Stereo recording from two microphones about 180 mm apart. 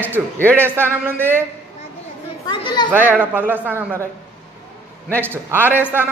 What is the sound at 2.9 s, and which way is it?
Speech, 10° right (ahead or behind).